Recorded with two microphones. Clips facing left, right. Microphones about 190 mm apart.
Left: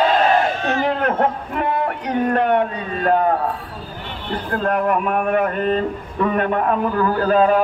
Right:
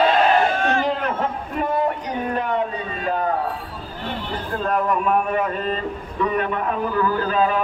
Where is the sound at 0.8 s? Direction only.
60° left (ahead or behind).